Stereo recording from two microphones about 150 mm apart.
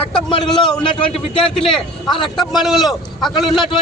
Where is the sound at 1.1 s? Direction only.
35° left (ahead or behind).